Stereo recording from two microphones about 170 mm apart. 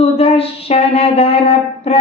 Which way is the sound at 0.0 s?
35° left (ahead or behind).